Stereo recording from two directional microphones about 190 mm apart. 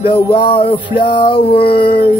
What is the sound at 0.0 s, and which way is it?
Music, 25° left (ahead or behind).